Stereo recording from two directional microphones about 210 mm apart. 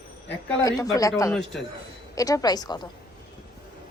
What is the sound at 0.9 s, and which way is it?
A woman's voice, 15° left (ahead or behind).